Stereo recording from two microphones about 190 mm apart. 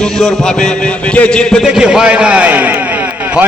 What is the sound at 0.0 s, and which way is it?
A man's voice, 5° left (ahead or behind).